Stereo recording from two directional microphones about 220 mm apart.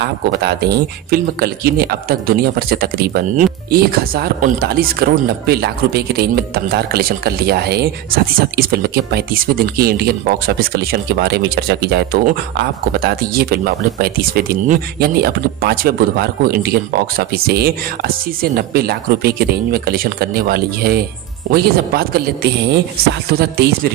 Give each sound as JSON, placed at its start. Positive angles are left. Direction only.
{"t": 0.0, "sound": "speech", "side_deg": -50}